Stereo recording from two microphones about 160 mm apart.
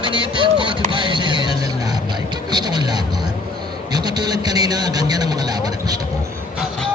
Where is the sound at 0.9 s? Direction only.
30° right (ahead or behind).